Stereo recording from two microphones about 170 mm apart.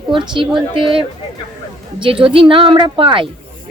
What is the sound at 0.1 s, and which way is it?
A woman's voice, 30° right (ahead or behind).